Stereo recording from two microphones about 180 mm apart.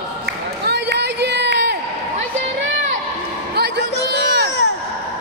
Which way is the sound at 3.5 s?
70° right (ahead or behind).